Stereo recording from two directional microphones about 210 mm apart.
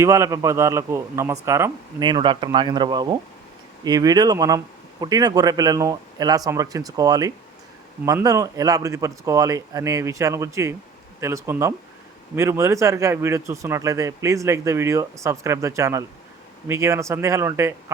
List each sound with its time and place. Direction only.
0.0 s a man's voice: 15° right (ahead or behind)